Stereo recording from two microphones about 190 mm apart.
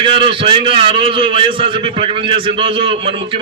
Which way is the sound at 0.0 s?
25° right (ahead or behind).